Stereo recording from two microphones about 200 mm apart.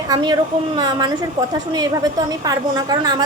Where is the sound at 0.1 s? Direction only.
20° right (ahead or behind).